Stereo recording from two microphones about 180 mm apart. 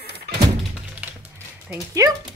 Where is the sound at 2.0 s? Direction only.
20° right (ahead or behind).